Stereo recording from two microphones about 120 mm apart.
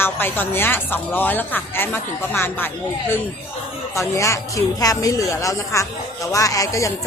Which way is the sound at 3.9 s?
25° left (ahead or behind).